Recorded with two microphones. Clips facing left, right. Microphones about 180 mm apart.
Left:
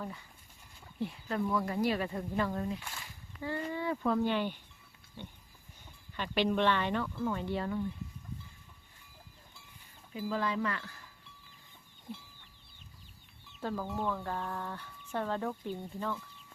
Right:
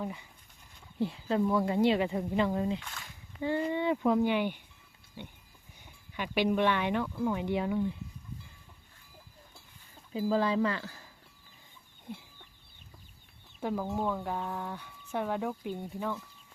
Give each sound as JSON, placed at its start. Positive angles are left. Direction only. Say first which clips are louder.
{"t": 0.0, "sound": "speech", "louder": "right 4 dB", "side_deg": -20}
{"t": 0.9, "sound": "speech", "louder": "right 5 dB", "side_deg": -30}
{"t": 5.8, "sound": "speech", "louder": "right 2 dB", "side_deg": -10}
{"t": 10.2, "sound": "speech", "louder": "right 5 dB", "side_deg": -30}
{"t": 13.6, "sound": "speech", "louder": "right 3 dB", "side_deg": -15}